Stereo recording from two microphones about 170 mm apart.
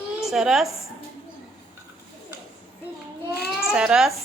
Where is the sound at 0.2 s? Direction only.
Centre (ahead or behind).